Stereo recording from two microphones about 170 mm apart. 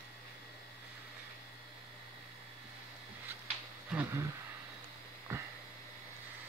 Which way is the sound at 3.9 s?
15° right (ahead or behind).